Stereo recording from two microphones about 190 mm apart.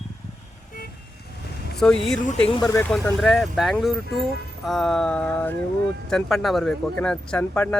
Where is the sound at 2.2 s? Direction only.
30° left (ahead or behind).